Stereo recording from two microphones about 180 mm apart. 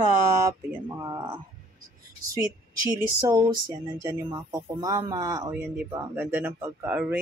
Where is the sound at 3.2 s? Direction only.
25° right (ahead or behind).